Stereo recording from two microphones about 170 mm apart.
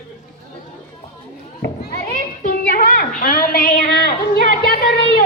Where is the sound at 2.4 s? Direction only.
55° left (ahead or behind).